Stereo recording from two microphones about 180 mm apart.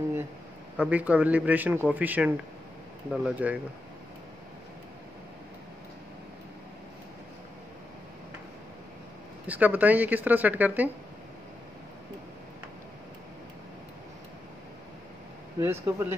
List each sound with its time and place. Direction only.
0.7 s speech: 10° right (ahead or behind)
9.5 s speech: 10° right (ahead or behind)
15.6 s speech: 15° right (ahead or behind)